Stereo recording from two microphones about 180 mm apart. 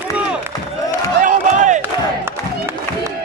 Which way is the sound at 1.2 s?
45° right (ahead or behind).